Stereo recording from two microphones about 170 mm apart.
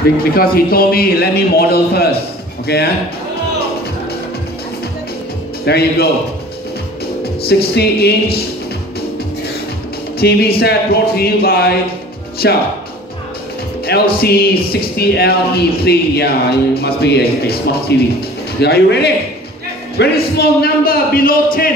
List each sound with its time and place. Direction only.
0.2 s speech: 60° left (ahead or behind)
5.7 s speech: 70° left (ahead or behind)
7.4 s speech: 70° left (ahead or behind)
10.1 s speech: 65° left (ahead or behind)
12.4 s speech: 80° left
13.8 s speech: 65° left (ahead or behind)